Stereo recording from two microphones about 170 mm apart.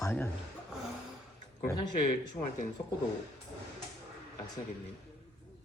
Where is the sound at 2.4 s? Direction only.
10° left (ahead or behind).